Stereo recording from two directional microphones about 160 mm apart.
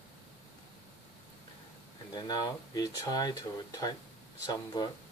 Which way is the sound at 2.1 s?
25° left (ahead or behind).